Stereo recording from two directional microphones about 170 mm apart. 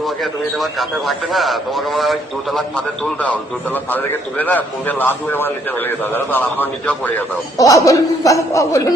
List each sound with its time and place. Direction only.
0.0 s a man's voice: centre (ahead or behind); by 8.8 s 20° left (ahead or behind)